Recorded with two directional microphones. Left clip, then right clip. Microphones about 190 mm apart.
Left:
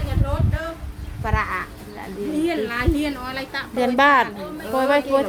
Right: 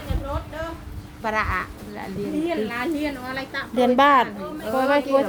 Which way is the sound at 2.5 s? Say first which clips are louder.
Left 3 dB; 60° left (ahead or behind).